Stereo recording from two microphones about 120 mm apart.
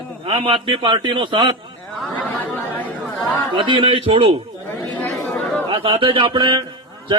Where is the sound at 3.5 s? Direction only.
45° right (ahead or behind).